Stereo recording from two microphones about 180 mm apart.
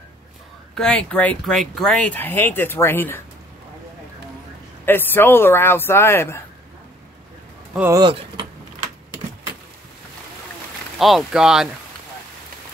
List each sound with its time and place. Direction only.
0.7 s speech: 5° left (ahead or behind)
4.8 s speech: 10° left (ahead or behind)
7.9 s speech: 25° right (ahead or behind)
11.0 s speech: centre (ahead or behind)